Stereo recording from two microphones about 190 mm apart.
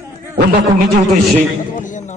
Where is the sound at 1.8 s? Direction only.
40° left (ahead or behind).